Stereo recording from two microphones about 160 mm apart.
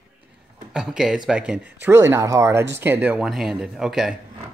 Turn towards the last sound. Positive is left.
turn(degrees=-5)  # may be behind; listen again after turning